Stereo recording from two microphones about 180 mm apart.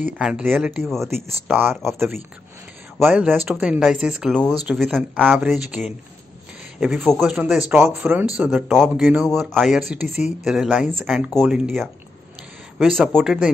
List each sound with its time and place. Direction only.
0.0 s speech: 5° right (ahead or behind)
1.0 s speech: 15° right (ahead or behind)